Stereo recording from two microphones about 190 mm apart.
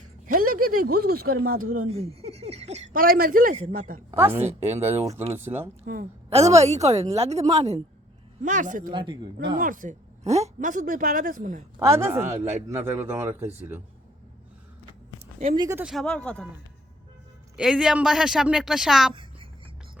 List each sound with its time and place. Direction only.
0.3 s speech: 50° right (ahead or behind)
2.2 s a woman's voice: 35° right (ahead or behind)
4.1 s speech: 10° right (ahead or behind)
4.4 s speech: 35° right (ahead or behind)
4.8 s speech: 15° right (ahead or behind)
5.8 s a woman's voice: 50° right (ahead or behind)
6.3 s a woman's voice: 35° right (ahead or behind)
8.9 s a woman's voice: 25° right (ahead or behind)
9.6 s a woman's voice: 45° right (ahead or behind)
11.8 s speech: 15° right (ahead or behind)
15.5 s a woman's voice: 20° right (ahead or behind)
15.8 s speech: centre (ahead or behind)
17.6 s speech: 5° right (ahead or behind)
19.1 s a sound: 25° right (ahead or behind)